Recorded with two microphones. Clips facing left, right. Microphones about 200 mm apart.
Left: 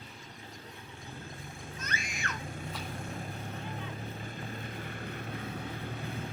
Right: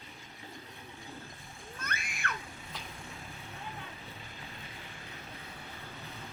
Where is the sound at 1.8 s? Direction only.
60° right (ahead or behind).